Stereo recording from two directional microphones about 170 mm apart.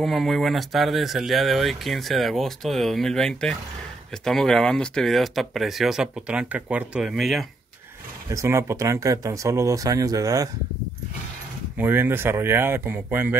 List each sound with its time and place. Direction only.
0.0 s speech: centre (ahead or behind)
8.3 s speech: 15° right (ahead or behind)
11.7 s speech: 10° right (ahead or behind)